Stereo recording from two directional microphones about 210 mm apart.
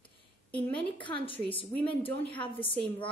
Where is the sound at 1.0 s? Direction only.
25° left (ahead or behind).